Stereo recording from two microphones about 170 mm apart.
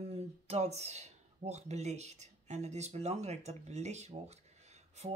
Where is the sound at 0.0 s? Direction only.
35° right (ahead or behind).